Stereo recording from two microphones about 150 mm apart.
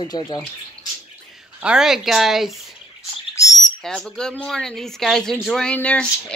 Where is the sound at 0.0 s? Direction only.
30° left (ahead or behind).